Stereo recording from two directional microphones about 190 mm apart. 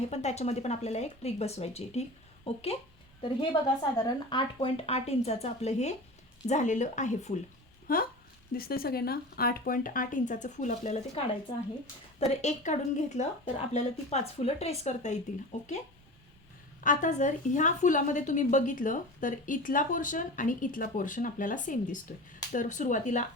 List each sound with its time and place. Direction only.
0.1 s speech: 35° left (ahead or behind)
3.9 s speech: 25° left (ahead or behind)
7.9 s a woman's voice: 50° left (ahead or behind)
16.8 s a woman's voice: 40° left (ahead or behind)